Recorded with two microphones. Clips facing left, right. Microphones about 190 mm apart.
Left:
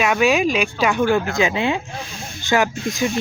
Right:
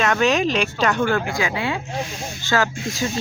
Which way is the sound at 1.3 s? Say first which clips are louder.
Left 4 dB; 20° left (ahead or behind).